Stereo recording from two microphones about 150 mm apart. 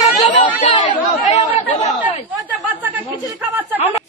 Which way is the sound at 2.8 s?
10° right (ahead or behind).